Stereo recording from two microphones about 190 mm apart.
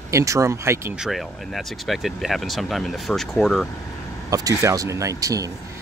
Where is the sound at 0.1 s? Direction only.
15° right (ahead or behind).